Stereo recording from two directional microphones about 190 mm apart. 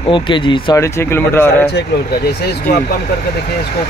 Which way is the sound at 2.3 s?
60° left (ahead or behind).